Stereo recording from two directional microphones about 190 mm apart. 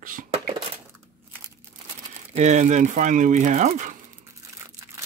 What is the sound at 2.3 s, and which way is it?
Speech, 35° right (ahead or behind).